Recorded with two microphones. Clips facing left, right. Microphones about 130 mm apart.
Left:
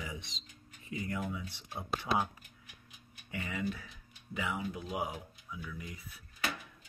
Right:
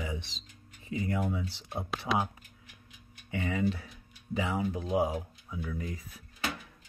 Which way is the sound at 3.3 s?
30° right (ahead or behind).